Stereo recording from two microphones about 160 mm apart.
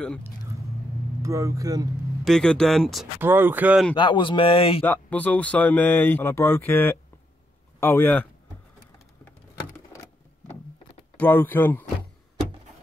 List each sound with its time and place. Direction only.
1.2 s speech: 20° right (ahead or behind)
2.2 s speech: 5° left (ahead or behind)
3.2 s speech: 15° right (ahead or behind)
3.9 s speech: 30° left (ahead or behind)
4.8 s speech: 10° left (ahead or behind)
11.1 s speech: 10° left (ahead or behind)